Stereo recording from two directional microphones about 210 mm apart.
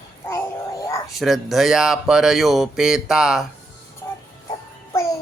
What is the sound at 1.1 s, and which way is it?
Speech, centre (ahead or behind).